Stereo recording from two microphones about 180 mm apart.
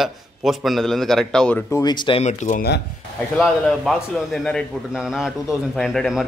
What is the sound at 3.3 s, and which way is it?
A man's voice, centre (ahead or behind).